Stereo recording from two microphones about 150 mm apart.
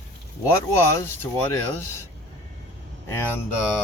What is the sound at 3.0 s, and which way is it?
Speech, 15° left (ahead or behind).